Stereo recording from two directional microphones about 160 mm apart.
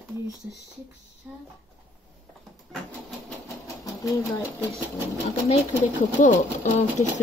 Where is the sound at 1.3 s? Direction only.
10° right (ahead or behind).